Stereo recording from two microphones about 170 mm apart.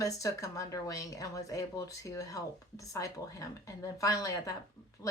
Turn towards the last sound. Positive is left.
turn(degrees=20)  # may be behind; listen again after turning